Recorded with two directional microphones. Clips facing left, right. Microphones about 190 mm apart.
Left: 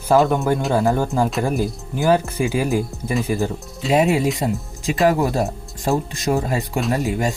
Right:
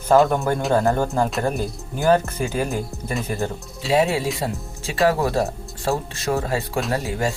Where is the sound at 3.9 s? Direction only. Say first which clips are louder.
Left 3 dB; 20° left (ahead or behind).